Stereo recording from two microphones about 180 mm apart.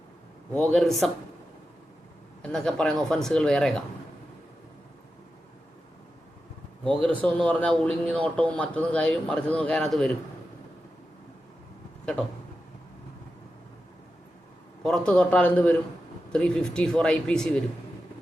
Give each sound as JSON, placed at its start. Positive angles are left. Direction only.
{"t": 0.5, "sound": "speech", "side_deg": 5}
{"t": 2.4, "sound": "speech", "side_deg": 5}
{"t": 7.1, "sound": "a man's voice", "side_deg": 10}
{"t": 14.8, "sound": "a man's voice", "side_deg": 5}